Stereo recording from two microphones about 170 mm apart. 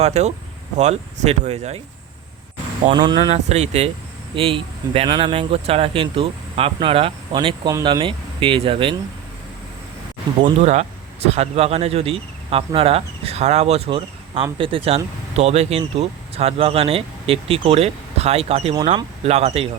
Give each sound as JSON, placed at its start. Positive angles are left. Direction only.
{"t": 0.0, "sound": "speech", "side_deg": -40}
{"t": 2.8, "sound": "speech", "side_deg": -25}
{"t": 3.3, "sound": "speech", "side_deg": -40}
{"t": 10.6, "sound": "speech", "side_deg": -40}